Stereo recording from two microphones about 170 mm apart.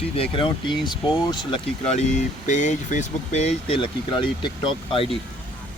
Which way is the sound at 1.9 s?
45° left (ahead or behind).